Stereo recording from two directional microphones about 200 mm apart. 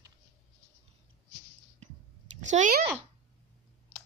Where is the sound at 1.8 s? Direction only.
35° right (ahead or behind).